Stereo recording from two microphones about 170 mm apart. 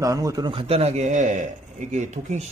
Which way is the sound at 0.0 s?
20° right (ahead or behind).